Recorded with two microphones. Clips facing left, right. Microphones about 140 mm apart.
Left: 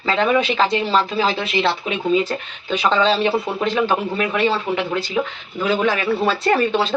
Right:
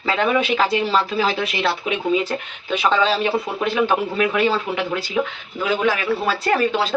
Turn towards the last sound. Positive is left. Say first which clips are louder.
# left 1 dB
turn(degrees=0)  # may be behind; listen again after turning